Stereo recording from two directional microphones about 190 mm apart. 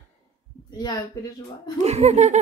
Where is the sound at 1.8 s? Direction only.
35° right (ahead or behind).